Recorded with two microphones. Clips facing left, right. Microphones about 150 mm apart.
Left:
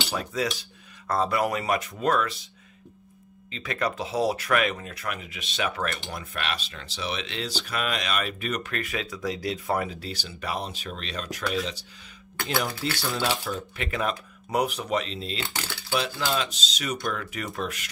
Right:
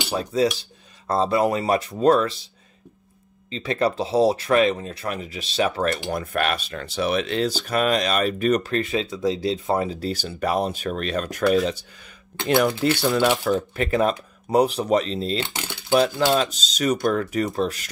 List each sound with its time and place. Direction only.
0.1 s speech: 30° right (ahead or behind)
9.9 s speech: 45° right (ahead or behind)
13.7 s speech: 35° right (ahead or behind)
15.4 s speech: 20° right (ahead or behind)
15.9 s speech: 40° right (ahead or behind)